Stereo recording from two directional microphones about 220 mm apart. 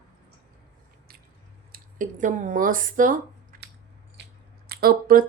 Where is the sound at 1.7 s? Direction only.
35° right (ahead or behind).